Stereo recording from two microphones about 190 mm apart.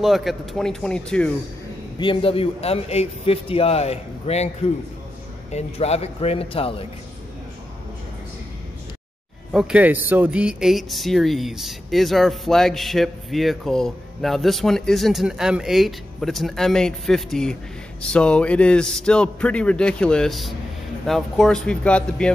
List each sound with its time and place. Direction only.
0.0 s speech: centre (ahead or behind)
2.0 s a man's voice: 25° left (ahead or behind)
5.5 s a man's voice: 35° left (ahead or behind)
9.5 s speech: 5° right (ahead or behind)